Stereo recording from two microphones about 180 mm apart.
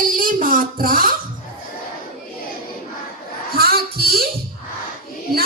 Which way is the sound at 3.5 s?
60° right (ahead or behind).